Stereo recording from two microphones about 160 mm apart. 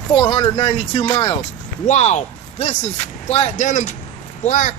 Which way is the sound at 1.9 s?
45° left (ahead or behind).